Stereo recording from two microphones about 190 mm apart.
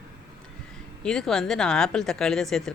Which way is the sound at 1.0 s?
Centre (ahead or behind).